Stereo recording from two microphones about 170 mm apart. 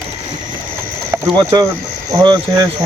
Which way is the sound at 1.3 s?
25° right (ahead or behind).